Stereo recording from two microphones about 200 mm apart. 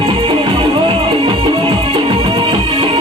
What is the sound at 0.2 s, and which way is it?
Music, 25° right (ahead or behind).